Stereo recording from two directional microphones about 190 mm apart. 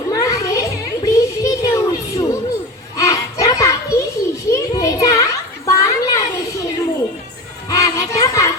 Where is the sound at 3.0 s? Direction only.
15° left (ahead or behind).